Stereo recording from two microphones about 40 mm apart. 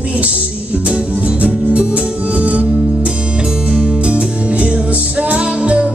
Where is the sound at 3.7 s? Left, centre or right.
Right.